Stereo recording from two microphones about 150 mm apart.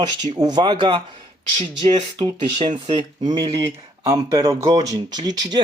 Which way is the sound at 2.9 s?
30° right (ahead or behind).